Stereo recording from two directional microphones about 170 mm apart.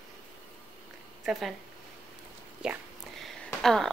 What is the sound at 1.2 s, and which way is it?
Speech, 5° right (ahead or behind).